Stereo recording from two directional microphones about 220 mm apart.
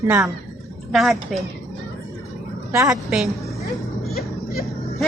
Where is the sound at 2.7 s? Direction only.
15° right (ahead or behind).